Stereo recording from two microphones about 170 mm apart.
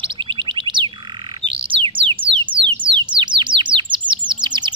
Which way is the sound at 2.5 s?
60° right (ahead or behind).